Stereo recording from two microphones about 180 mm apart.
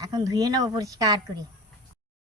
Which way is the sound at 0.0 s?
20° right (ahead or behind).